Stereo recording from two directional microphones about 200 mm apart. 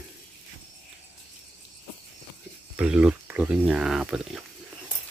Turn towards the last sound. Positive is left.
turn(degrees=-5)  # may be behind; listen again after turning